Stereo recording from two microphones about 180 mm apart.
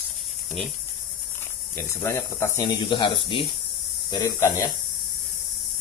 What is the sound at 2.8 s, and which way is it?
Speech, 25° left (ahead or behind).